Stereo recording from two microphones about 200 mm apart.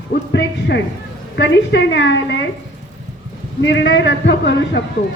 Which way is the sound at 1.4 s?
60° left (ahead or behind).